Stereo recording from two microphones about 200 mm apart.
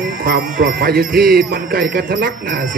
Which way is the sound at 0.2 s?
45° right (ahead or behind).